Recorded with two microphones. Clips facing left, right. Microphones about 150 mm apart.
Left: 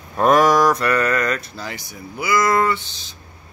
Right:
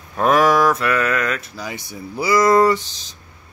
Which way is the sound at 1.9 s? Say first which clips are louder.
Right 3 dB; 35° right (ahead or behind).